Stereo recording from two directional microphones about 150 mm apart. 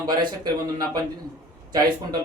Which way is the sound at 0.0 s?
25° right (ahead or behind).